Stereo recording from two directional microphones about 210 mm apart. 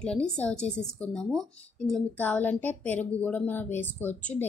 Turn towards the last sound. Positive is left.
turn(degrees=10)  # may be behind; listen again after turning